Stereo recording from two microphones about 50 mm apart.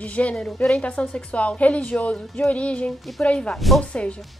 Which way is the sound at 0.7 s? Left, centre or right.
Left.